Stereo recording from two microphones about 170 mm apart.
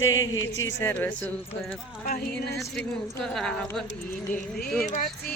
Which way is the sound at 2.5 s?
5° left (ahead or behind).